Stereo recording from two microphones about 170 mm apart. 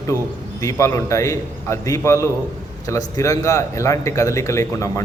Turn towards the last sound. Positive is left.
turn(degrees=15)  # may be behind; listen again after turning